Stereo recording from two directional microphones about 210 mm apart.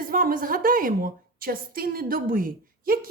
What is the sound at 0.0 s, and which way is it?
A woman's voice, 45° right (ahead or behind).